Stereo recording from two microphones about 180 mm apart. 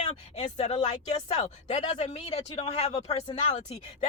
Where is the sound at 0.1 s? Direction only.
40° left (ahead or behind).